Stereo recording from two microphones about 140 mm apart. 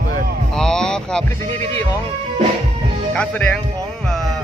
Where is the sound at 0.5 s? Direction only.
5° left (ahead or behind).